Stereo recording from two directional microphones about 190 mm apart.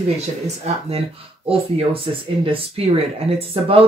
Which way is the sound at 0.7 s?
30° right (ahead or behind).